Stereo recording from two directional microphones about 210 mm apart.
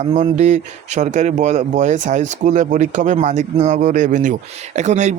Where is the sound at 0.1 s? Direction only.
35° right (ahead or behind).